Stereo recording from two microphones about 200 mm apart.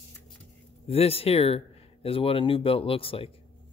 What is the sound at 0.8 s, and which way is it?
Speech, 30° left (ahead or behind).